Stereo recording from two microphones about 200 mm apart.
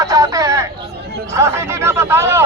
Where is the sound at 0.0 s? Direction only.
20° right (ahead or behind).